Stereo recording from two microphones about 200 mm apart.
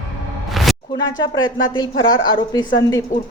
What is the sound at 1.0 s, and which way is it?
Speech, 20° left (ahead or behind).